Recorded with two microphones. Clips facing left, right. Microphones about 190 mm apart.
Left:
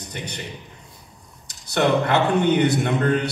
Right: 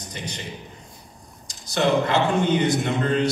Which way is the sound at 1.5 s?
60° left (ahead or behind).